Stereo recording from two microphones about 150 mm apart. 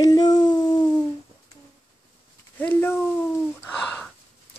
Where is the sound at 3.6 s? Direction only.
5° left (ahead or behind).